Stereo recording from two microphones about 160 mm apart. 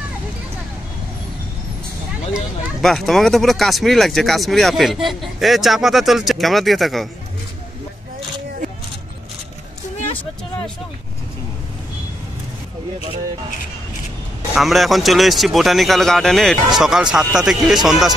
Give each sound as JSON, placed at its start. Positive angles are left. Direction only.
{"t": 2.3, "sound": "speech", "side_deg": 0}
{"t": 14.5, "sound": "speech", "side_deg": 0}